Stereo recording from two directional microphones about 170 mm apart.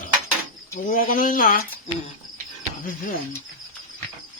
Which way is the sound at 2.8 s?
55° left (ahead or behind).